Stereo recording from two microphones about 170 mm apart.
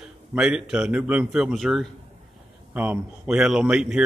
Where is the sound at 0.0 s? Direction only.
5° right (ahead or behind).